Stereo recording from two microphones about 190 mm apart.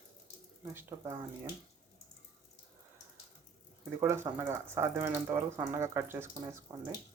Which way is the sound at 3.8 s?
10° right (ahead or behind).